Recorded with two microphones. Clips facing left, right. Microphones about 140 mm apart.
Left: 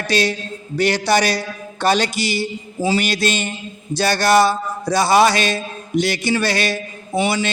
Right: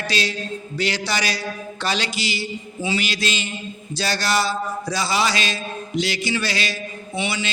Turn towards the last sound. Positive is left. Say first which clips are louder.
# left 7 dB
turn(degrees=45)  # may be behind; listen again after turning